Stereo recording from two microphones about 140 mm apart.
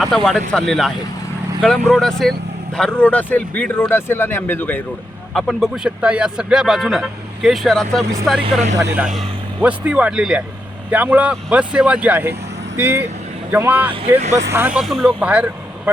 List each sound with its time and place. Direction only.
0.0 s speech: 5° left (ahead or behind)
5.3 s speech: centre (ahead or behind)
8.4 s speech: 55° right (ahead or behind)
9.0 s speech: 5° right (ahead or behind)
13.9 s speech: 45° right (ahead or behind)
14.5 s speech: 15° right (ahead or behind)
14.8 s speech: centre (ahead or behind)
15.0 s speech: 10° right (ahead or behind)